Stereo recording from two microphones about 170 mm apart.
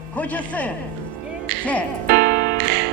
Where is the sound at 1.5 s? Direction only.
65° right (ahead or behind).